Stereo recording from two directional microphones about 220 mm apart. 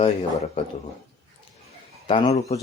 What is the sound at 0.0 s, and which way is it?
Speech, 30° left (ahead or behind).